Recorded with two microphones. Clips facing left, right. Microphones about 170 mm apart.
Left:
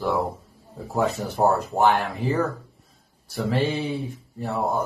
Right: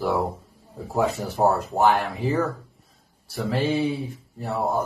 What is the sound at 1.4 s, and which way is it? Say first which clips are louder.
Speech: even; centre (ahead or behind).